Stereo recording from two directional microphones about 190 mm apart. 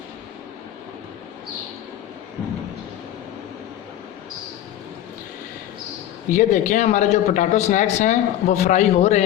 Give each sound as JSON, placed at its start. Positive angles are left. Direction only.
{"t": 6.2, "sound": "a man's voice", "side_deg": 40}